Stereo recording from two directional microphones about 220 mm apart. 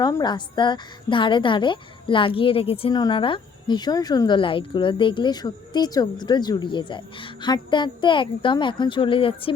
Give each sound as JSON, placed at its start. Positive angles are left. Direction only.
{"t": 0.0, "sound": "a woman's voice", "side_deg": 20}